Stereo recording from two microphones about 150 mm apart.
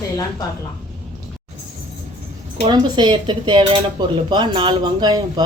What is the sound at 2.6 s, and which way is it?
Speech, 30° right (ahead or behind).